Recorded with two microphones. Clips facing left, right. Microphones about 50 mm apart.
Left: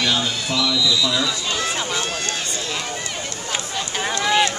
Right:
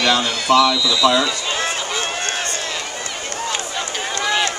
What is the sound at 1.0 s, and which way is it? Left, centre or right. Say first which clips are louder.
Speech: right 8 dB; right.